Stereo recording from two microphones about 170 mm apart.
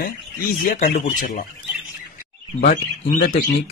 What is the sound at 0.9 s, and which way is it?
Speech, 50° left (ahead or behind).